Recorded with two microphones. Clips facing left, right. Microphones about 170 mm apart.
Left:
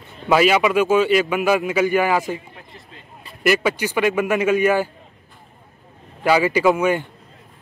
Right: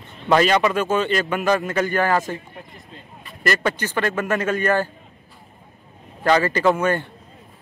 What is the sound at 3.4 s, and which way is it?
Speech, 10° left (ahead or behind).